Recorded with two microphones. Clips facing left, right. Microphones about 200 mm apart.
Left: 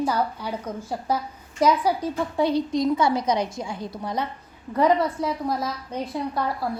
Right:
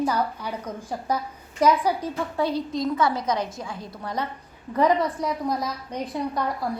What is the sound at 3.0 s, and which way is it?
Speech, 30° left (ahead or behind).